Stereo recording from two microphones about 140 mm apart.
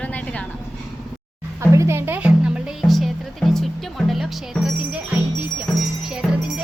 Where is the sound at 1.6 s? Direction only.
20° right (ahead or behind); by 5.0 s 5° right (ahead or behind).